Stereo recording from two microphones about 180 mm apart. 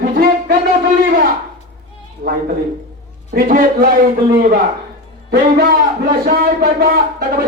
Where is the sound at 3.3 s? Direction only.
50° right (ahead or behind).